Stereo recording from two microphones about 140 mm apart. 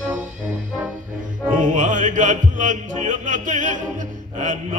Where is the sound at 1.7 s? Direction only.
65° right (ahead or behind).